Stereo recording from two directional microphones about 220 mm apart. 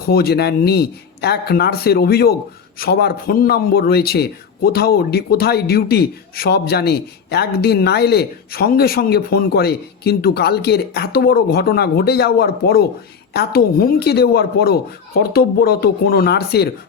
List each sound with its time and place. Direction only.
0.1 s a man's voice: 45° left (ahead or behind)